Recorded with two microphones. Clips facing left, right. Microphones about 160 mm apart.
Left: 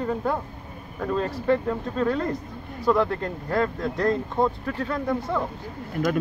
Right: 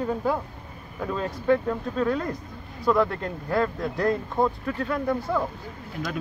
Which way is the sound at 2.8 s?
Centre (ahead or behind).